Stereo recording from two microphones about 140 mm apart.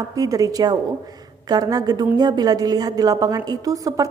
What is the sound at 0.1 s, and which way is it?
A woman's voice, 25° right (ahead or behind).